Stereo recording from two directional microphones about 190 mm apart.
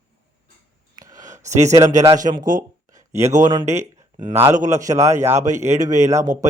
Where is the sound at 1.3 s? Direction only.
40° right (ahead or behind).